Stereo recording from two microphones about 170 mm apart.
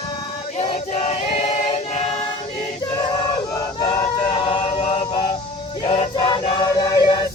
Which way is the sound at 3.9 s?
30° left (ahead or behind).